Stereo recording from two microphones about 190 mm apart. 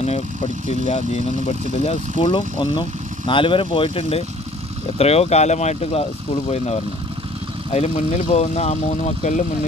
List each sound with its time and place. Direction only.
0.7 s speech: 35° left (ahead or behind)
1.9 s speech: 25° left (ahead or behind)